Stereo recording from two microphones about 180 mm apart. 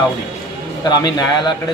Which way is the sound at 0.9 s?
25° left (ahead or behind).